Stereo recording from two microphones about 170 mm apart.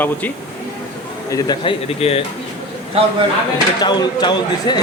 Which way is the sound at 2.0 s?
35° left (ahead or behind).